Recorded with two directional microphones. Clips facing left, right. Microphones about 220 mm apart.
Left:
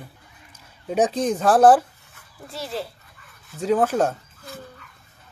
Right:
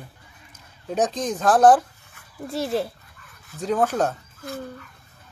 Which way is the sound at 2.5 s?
55° right (ahead or behind).